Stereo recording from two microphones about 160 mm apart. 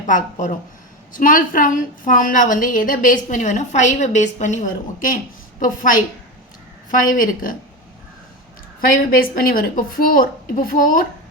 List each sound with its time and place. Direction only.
0.1 s a woman's voice: 55° left (ahead or behind)
8.9 s a woman's voice: 65° left (ahead or behind)